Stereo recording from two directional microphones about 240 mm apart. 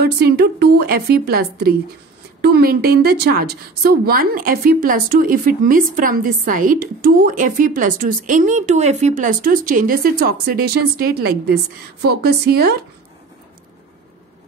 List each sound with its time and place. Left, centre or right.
0.0 s a woman's voice: right